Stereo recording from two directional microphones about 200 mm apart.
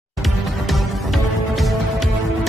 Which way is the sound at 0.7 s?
Centre (ahead or behind).